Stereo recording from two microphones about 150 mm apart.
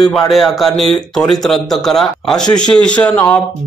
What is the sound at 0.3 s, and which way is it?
Speech, centre (ahead or behind).